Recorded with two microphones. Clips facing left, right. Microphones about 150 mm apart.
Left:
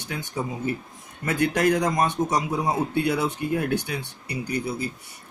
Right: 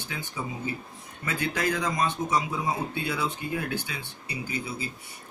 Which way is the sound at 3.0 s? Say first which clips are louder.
Left 7 dB; 55° left (ahead or behind).